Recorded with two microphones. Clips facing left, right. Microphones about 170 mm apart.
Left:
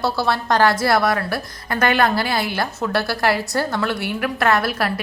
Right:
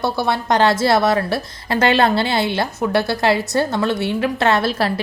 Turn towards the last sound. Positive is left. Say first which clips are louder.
# right 2 dB
turn(degrees=-25)  # may be behind; listen again after turning